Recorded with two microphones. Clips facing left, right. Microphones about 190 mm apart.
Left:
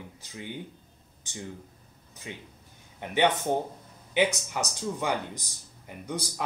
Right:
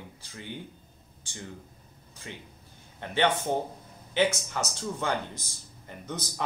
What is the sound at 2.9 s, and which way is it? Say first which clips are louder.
A man's voice: left 1 dB; 15° left (ahead or behind).